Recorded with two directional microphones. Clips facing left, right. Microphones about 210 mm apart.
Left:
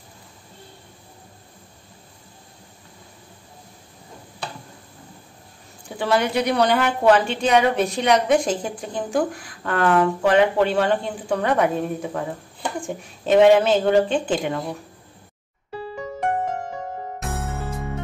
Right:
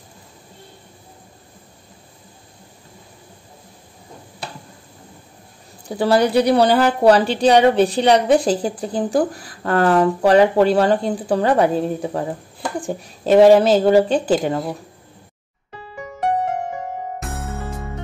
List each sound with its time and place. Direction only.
5.9 s a woman's voice: 35° right (ahead or behind)
17.2 s music: centre (ahead or behind)